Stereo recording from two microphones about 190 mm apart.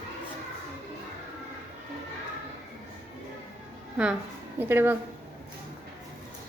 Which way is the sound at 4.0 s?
5° right (ahead or behind).